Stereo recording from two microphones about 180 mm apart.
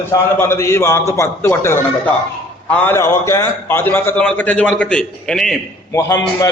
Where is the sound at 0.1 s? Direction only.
15° left (ahead or behind).